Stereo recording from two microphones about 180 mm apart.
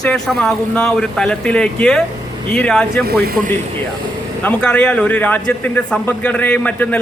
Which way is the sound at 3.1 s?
60° right (ahead or behind).